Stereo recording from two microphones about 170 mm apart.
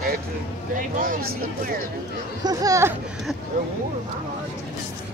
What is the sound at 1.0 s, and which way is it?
Speech, 55° right (ahead or behind).